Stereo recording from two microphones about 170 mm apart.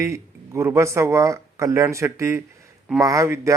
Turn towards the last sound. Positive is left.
turn(degrees=-15)  # may be behind; listen again after turning